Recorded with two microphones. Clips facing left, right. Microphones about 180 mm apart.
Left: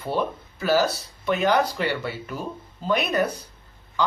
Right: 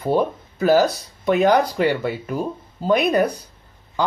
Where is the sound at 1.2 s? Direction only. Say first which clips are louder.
Right 5 dB; 35° right (ahead or behind).